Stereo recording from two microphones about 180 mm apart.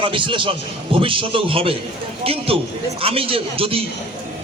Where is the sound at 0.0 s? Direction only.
30° right (ahead or behind).